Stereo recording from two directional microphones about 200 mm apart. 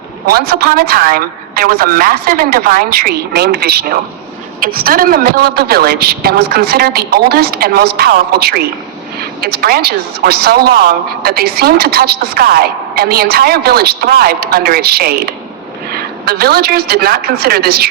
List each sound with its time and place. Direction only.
0.3 s a woman's voice: 50° right (ahead or behind)